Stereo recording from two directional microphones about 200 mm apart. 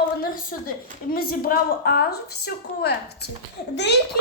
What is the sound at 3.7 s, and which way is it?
Speech, 60° left (ahead or behind).